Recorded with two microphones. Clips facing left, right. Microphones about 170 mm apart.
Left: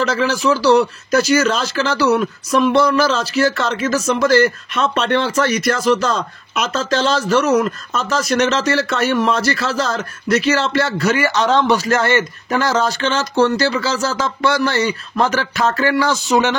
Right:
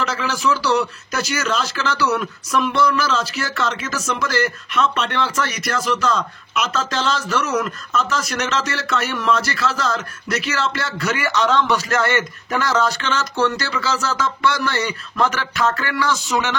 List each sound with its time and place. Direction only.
0.0 s a man's voice: 35° left (ahead or behind)